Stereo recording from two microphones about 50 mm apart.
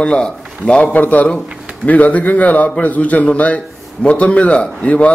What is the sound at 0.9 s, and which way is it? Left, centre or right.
A man's voice, left.